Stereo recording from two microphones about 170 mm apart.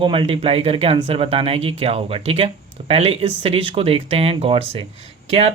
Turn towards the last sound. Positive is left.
turn(degrees=-35)  # may be behind; listen again after turning